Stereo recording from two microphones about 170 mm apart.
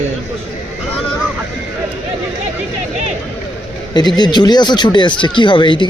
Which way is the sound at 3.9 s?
25° left (ahead or behind).